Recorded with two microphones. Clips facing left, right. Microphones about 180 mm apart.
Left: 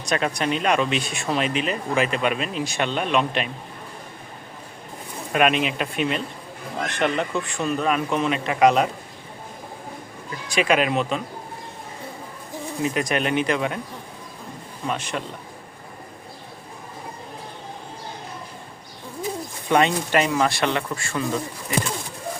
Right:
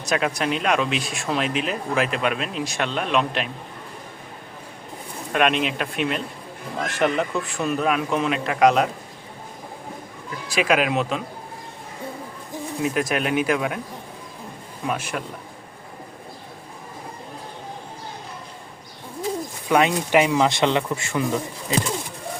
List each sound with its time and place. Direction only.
0.0 s speech: 5° right (ahead or behind)
5.3 s speech: 5° left (ahead or behind)
10.5 s speech: 5° right (ahead or behind)
12.8 s speech: 5° right (ahead or behind)
14.8 s speech: 5° right (ahead or behind)
19.6 s speech: 5° right (ahead or behind)